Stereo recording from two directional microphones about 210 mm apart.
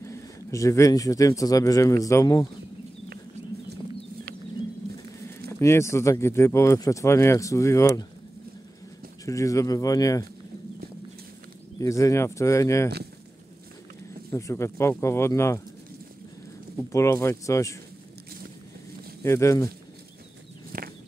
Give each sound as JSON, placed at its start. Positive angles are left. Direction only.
{"t": 0.0, "sound": "speech", "side_deg": 15}
{"t": 5.5, "sound": "speech", "side_deg": 15}
{"t": 9.2, "sound": "speech", "side_deg": 15}
{"t": 11.8, "sound": "speech", "side_deg": 15}
{"t": 14.3, "sound": "speech", "side_deg": 15}
{"t": 16.9, "sound": "speech", "side_deg": 15}
{"t": 19.2, "sound": "speech", "side_deg": 15}
{"t": 20.7, "sound": "a sound", "side_deg": -45}